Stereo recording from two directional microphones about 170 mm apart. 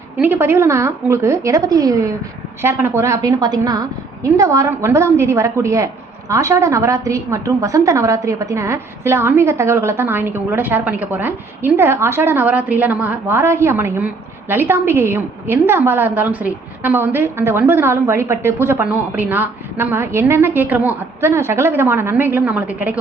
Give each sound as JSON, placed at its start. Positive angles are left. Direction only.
{"t": 0.2, "sound": "a woman's voice", "side_deg": -15}